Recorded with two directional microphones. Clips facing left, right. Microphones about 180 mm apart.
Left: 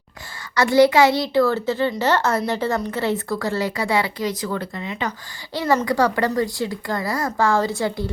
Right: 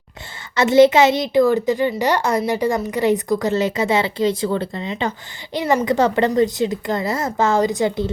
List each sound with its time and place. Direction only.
0.5 s a child's voice: 20° right (ahead or behind)